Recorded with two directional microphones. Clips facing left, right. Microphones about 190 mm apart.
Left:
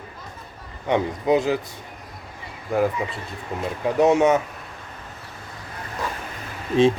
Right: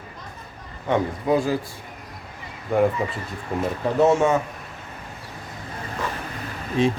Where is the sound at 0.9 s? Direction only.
20° left (ahead or behind).